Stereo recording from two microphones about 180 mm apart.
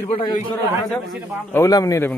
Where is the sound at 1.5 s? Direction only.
15° left (ahead or behind).